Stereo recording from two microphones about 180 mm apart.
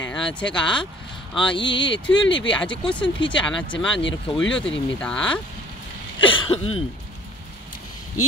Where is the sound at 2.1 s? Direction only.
90° left.